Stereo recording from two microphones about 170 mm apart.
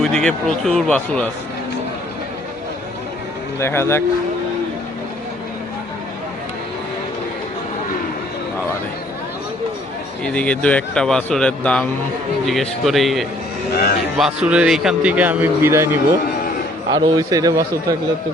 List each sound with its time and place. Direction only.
0.0 s speech: 5° left (ahead or behind)
3.6 s speech: 15° left (ahead or behind)
10.2 s a man's voice: 5° left (ahead or behind); by 17.9 s 20° right (ahead or behind)